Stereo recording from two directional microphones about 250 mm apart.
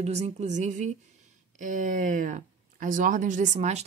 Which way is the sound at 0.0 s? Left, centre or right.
Right.